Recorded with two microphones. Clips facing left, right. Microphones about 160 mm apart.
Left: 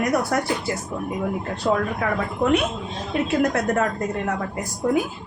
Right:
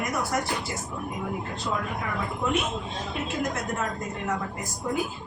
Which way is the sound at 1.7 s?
65° left (ahead or behind).